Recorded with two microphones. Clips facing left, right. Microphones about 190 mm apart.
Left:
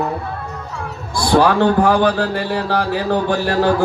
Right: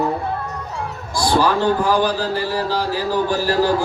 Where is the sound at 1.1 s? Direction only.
60° left (ahead or behind).